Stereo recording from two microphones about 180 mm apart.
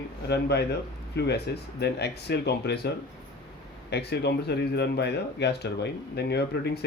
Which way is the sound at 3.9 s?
65° left (ahead or behind).